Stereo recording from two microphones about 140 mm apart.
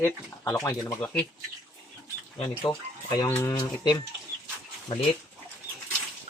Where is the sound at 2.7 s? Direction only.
30° left (ahead or behind).